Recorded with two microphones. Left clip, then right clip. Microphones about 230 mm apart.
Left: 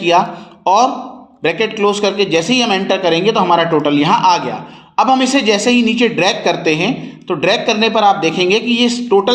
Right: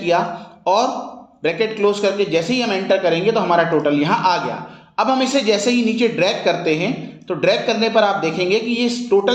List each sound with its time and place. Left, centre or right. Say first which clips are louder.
0.6 s speech: left 5 dB; left